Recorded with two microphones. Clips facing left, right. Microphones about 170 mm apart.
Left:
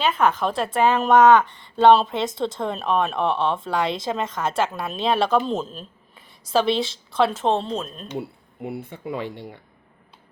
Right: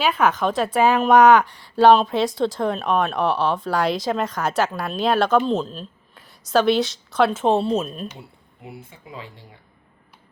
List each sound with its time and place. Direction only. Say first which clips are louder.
0.0 s a woman's voice: right 1 dB; centre (ahead or behind)
8.6 s speech: left 9 dB; 65° left (ahead or behind)